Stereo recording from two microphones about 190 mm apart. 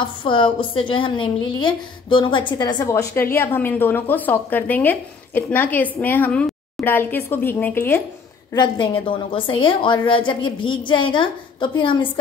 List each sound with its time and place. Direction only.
0.0 s a woman's voice: 25° left (ahead or behind); by 8.0 s 10° left (ahead or behind)
8.5 s a woman's voice: 25° left (ahead or behind)